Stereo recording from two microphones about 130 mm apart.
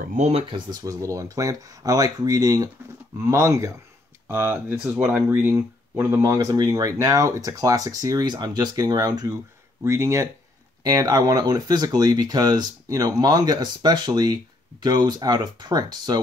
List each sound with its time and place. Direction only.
0.1 s speech: 55° right (ahead or behind)
0.7 s speech: 25° right (ahead or behind)